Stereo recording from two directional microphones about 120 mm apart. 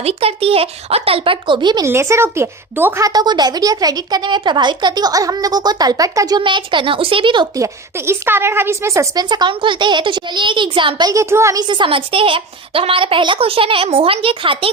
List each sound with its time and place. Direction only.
0.0 s a woman's voice: 60° right (ahead or behind); by 1.8 s 40° right (ahead or behind)
1.8 s a woman's voice: 25° right (ahead or behind)
3.0 s speech: 30° right (ahead or behind)
7.5 s a woman's voice: 25° right (ahead or behind)
9.3 s speech: 40° right (ahead or behind)
11.1 s a woman's voice: 25° right (ahead or behind)
11.7 s a woman's voice: 45° right (ahead or behind)